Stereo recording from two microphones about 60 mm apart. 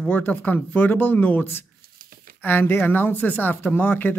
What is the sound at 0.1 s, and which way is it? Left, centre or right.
Speech, left.